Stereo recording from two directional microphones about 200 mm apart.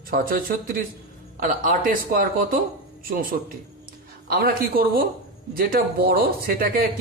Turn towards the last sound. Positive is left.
turn(degrees=-45)  # may be behind; listen again after turning